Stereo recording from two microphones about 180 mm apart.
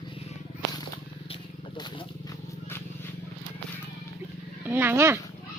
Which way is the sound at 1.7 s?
25° left (ahead or behind).